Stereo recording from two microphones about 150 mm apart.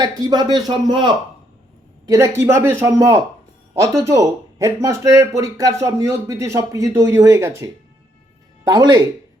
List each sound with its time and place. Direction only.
0.0 s speech: 25° right (ahead or behind)
2.0 s speech: 20° right (ahead or behind)